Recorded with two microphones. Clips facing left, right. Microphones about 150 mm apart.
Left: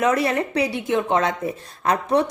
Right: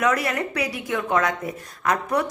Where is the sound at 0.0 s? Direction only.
25° left (ahead or behind).